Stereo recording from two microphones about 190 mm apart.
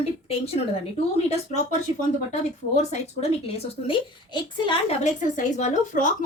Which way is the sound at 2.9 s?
35° left (ahead or behind).